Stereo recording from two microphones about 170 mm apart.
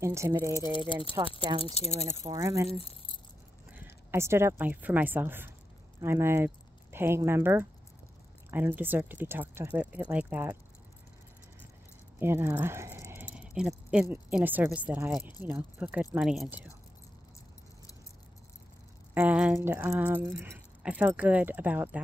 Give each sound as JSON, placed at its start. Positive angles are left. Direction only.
{"t": 0.0, "sound": "speech", "side_deg": -15}
{"t": 0.5, "sound": "speech", "side_deg": 15}
{"t": 1.2, "sound": "speech", "side_deg": -20}
{"t": 1.6, "sound": "speech", "side_deg": 40}
{"t": 2.3, "sound": "speech", "side_deg": -20}
{"t": 2.7, "sound": "speech", "side_deg": 35}
{"t": 3.7, "sound": "a woman's voice", "side_deg": -15}
{"t": 12.2, "sound": "keys jangling", "side_deg": -15}
{"t": 14.1, "sound": "speech", "side_deg": -10}
{"t": 19.1, "sound": "speech", "side_deg": -10}